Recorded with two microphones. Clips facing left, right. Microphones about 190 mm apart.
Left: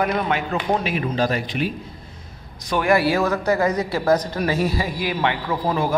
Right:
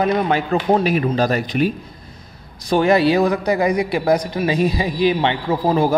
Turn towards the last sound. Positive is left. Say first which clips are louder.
# right 5 dB
turn(degrees=-30)  # may be behind; listen again after turning